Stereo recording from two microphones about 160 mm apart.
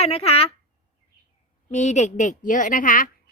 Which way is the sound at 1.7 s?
45° left (ahead or behind).